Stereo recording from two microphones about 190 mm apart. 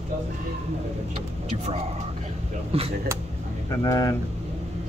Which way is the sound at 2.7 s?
30° right (ahead or behind).